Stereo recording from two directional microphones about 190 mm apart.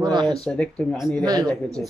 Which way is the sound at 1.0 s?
20° right (ahead or behind).